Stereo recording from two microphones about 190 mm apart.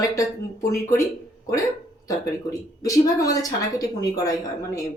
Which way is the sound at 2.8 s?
20° left (ahead or behind).